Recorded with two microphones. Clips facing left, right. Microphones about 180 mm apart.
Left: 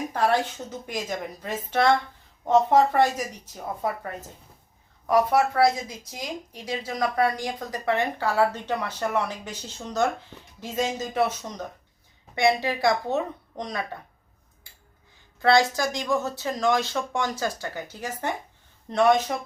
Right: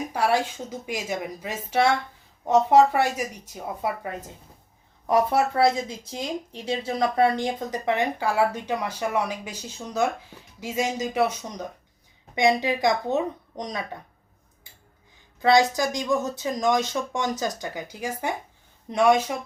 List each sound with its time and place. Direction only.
0.1 s a woman's voice: 10° right (ahead or behind)
5.0 s speech: 25° right (ahead or behind)
15.4 s speech: 15° right (ahead or behind)